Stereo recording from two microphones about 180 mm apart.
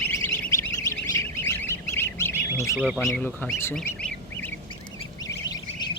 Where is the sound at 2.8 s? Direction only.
Centre (ahead or behind).